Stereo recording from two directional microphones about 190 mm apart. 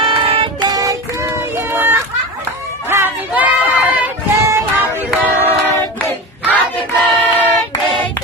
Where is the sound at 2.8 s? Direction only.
10° right (ahead or behind).